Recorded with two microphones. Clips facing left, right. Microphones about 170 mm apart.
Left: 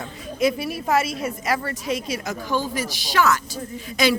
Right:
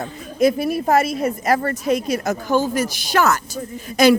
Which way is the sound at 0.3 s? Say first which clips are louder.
Right 5 dB; 45° right (ahead or behind).